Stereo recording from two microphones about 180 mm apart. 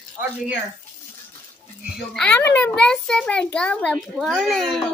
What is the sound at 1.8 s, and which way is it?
Speech, 5° right (ahead or behind).